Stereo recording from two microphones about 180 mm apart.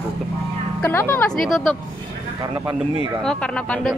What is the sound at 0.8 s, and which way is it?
Speech, 10° left (ahead or behind).